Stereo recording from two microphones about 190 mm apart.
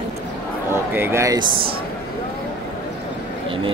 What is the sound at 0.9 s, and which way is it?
Speech, 15° right (ahead or behind).